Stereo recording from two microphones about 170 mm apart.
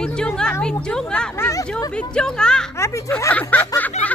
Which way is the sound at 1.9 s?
5° left (ahead or behind).